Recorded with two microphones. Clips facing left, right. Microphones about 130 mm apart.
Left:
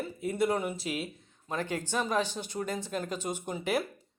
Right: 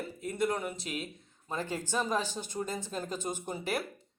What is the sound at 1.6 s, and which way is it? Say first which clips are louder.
Speech: left 1 dB; 10° right (ahead or behind).